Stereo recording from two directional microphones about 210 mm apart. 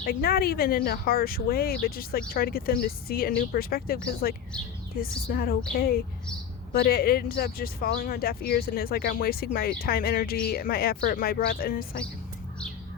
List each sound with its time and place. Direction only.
0.0 s speech: 45° left (ahead or behind)